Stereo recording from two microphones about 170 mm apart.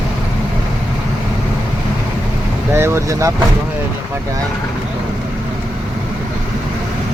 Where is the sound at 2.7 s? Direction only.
15° right (ahead or behind).